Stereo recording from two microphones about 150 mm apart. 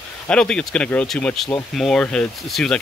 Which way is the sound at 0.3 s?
5° left (ahead or behind).